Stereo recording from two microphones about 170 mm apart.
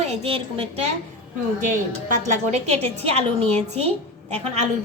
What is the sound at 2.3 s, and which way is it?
A woman's voice, 40° right (ahead or behind).